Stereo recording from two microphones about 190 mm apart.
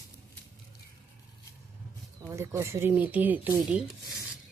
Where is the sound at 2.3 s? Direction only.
15° right (ahead or behind).